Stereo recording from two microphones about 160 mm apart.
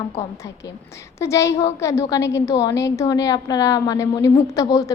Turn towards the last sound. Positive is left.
turn(degrees=20)  # may be behind; listen again after turning